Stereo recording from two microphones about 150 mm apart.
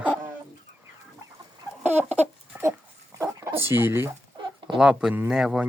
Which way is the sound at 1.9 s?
50° right (ahead or behind).